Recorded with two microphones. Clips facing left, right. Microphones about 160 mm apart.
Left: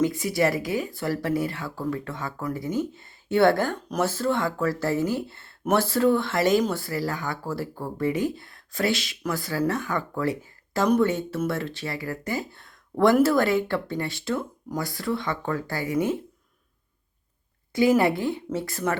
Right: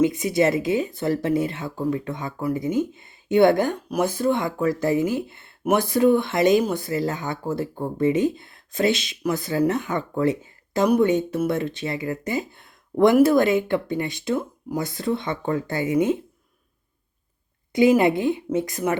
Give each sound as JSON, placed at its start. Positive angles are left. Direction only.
{"t": 0.0, "sound": "speech", "side_deg": -20}
{"t": 17.7, "sound": "speech", "side_deg": -20}